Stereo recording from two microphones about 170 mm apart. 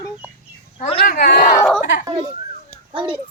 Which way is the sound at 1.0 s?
55° left (ahead or behind).